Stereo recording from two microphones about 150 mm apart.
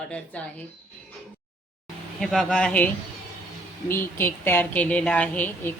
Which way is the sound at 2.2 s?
Centre (ahead or behind).